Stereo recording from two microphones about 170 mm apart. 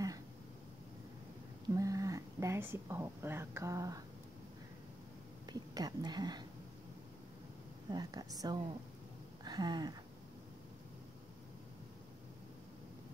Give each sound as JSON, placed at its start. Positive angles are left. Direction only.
{"t": 1.8, "sound": "speech", "side_deg": -20}
{"t": 5.5, "sound": "speech", "side_deg": -25}
{"t": 7.9, "sound": "a woman's voice", "side_deg": -25}
{"t": 9.4, "sound": "a sound", "side_deg": -25}